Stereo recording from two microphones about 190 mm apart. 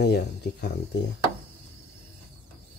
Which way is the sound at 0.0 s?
60° left (ahead or behind).